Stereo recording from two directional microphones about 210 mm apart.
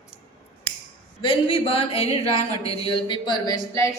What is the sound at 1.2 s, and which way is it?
A woman's voice, 25° left (ahead or behind).